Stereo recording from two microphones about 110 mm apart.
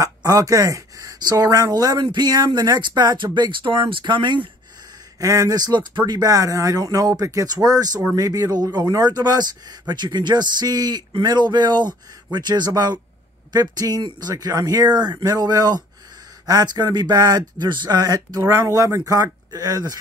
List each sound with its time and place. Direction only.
0.0 s speech: 35° right (ahead or behind)
5.2 s speech: 30° right (ahead or behind)